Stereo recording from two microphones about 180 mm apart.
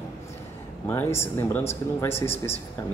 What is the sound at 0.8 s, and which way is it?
Speech, 15° left (ahead or behind).